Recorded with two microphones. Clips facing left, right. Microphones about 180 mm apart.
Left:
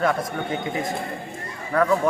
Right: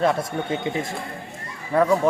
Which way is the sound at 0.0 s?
25° right (ahead or behind).